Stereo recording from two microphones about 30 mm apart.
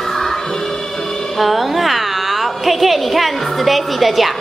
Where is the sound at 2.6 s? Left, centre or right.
Centre.